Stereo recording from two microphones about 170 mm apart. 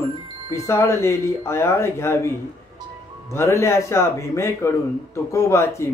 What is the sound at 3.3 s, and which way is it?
Speech, 15° left (ahead or behind).